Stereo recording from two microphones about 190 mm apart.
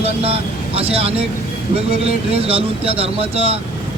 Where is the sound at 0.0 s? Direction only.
30° right (ahead or behind).